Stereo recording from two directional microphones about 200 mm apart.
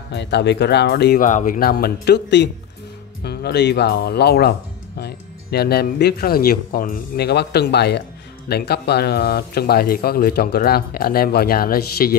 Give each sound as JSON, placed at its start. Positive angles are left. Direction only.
{"t": 0.1, "sound": "speech", "side_deg": 60}
{"t": 1.2, "sound": "speech", "side_deg": 40}